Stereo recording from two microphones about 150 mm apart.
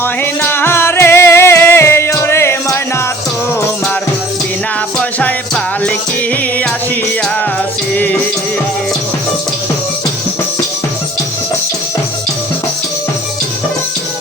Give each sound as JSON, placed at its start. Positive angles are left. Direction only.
{"t": 0.0, "sound": "music", "side_deg": 15}
{"t": 4.9, "sound": "music", "side_deg": 5}
{"t": 7.9, "sound": "music", "side_deg": 10}